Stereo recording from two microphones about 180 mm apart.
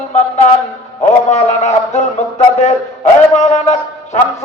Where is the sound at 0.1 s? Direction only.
40° left (ahead or behind).